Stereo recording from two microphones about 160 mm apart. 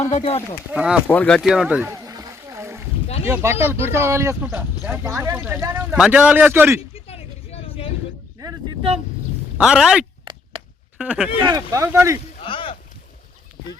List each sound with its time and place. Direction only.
0.1 s speech: 40° left (ahead or behind)
0.7 s speech: 5° right (ahead or behind)
1.1 s speech: 10° left (ahead or behind)
1.5 s a sound: 5° right (ahead or behind)
3.2 s speech: 10° right (ahead or behind)
6.9 s vehicle: 40° left (ahead or behind)
8.4 s a sound: 20° right (ahead or behind)
9.6 s speech: 5° right (ahead or behind)
11.4 s speech: 20° right (ahead or behind)
12.4 s a sound: 35° left (ahead or behind)